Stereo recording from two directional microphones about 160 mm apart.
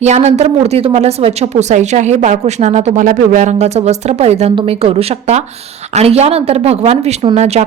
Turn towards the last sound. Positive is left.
turn(degrees=-45)  # may be behind; listen again after turning